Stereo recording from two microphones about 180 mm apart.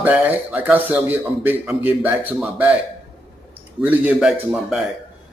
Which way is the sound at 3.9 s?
10° right (ahead or behind).